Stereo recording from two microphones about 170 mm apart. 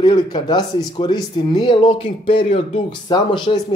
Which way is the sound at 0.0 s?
25° left (ahead or behind).